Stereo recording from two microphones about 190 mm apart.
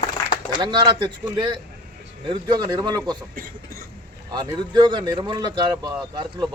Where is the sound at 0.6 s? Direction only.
25° right (ahead or behind).